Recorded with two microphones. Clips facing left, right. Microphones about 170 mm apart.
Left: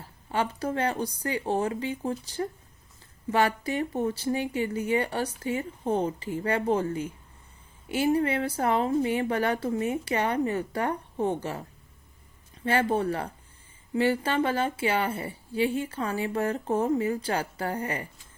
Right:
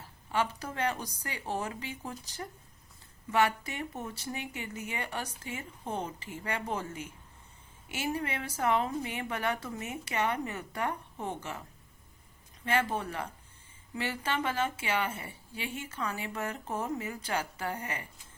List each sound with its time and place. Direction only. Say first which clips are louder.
0.3 s a woman's voice: left 4 dB; 30° left (ahead or behind)
7.9 s a woman's voice: left 10 dB; 30° left (ahead or behind)
12.6 s a woman's voice: left 6 dB; 35° left (ahead or behind)